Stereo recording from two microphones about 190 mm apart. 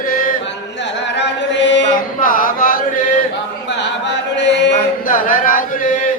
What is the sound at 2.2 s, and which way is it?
Chant, 45° left (ahead or behind).